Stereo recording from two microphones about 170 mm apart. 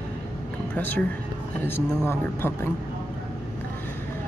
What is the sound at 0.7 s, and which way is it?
Speech, 10° left (ahead or behind).